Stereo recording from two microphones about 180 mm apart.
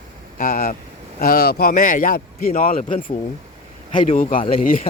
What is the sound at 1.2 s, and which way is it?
A man's voice, 55° left (ahead or behind).